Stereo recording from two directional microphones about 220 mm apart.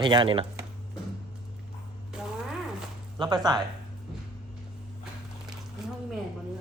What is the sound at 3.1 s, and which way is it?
Speech, 20° right (ahead or behind).